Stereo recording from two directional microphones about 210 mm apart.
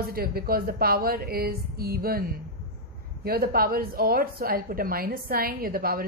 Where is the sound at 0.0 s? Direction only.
45° right (ahead or behind).